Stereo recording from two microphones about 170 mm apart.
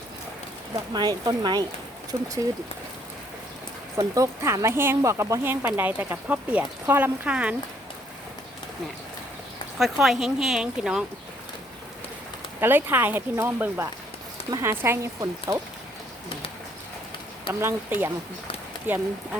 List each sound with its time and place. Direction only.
0.9 s speech: 25° right (ahead or behind)
3.9 s speech: 20° right (ahead or behind)
9.7 s speech: centre (ahead or behind)
12.5 s speech: 10° right (ahead or behind)
17.5 s speech: 15° right (ahead or behind)